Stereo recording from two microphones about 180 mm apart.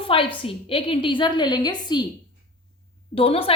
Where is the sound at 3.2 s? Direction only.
30° left (ahead or behind).